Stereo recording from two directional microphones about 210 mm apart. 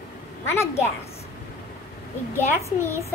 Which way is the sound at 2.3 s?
10° left (ahead or behind).